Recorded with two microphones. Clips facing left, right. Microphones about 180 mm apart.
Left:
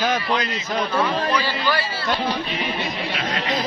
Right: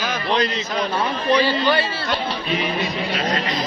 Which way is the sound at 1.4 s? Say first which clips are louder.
Right 5 dB; 25° right (ahead or behind).